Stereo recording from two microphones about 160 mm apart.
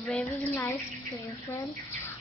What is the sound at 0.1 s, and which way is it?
Speech, 10° left (ahead or behind).